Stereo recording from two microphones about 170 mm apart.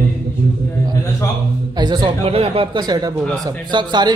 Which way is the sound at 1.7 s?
25° right (ahead or behind).